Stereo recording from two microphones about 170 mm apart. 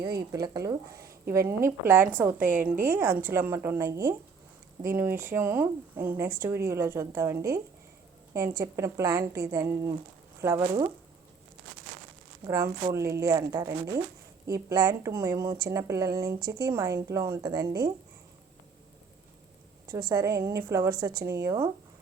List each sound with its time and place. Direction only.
0.3 s a woman's voice: 20° right (ahead or behind)
12.5 s a woman's voice: 15° right (ahead or behind)
19.9 s a woman's voice: 20° right (ahead or behind)